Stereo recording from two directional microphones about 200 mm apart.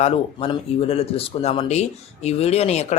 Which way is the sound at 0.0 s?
30° left (ahead or behind).